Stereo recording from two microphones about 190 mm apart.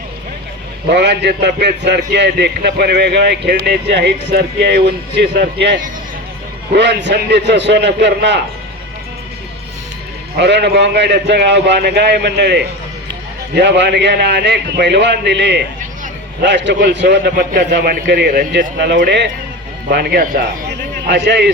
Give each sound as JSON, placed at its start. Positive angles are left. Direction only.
{"t": 0.9, "sound": "a man's voice", "side_deg": -65}
{"t": 10.3, "sound": "a man's voice", "side_deg": -60}